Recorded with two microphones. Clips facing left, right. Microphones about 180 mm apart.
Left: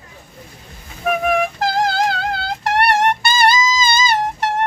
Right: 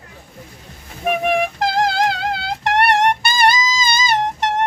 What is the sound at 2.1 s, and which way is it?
Music, 20° right (ahead or behind).